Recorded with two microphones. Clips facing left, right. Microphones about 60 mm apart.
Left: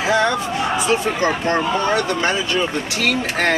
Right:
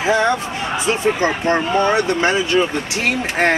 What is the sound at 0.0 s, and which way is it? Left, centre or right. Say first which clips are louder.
Speech: right 1 dB; right.